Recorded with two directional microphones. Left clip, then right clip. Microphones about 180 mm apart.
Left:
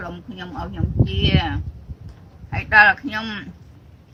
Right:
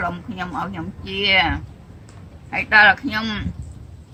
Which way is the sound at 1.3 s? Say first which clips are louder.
Right 7 dB; 15° right (ahead or behind).